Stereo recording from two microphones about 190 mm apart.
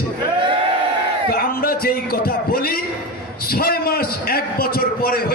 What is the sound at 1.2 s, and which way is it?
A man's voice, 50° left (ahead or behind).